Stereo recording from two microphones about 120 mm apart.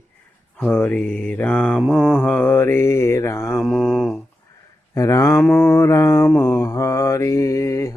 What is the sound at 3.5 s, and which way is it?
Mantra, 5° left (ahead or behind).